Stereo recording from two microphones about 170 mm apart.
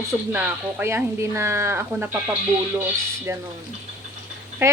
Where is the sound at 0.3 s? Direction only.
15° right (ahead or behind).